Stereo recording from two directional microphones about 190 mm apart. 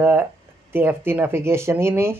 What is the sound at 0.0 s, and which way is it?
Speech, 10° right (ahead or behind).